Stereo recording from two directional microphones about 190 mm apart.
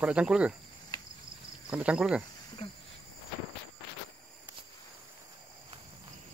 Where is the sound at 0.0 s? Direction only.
5° right (ahead or behind).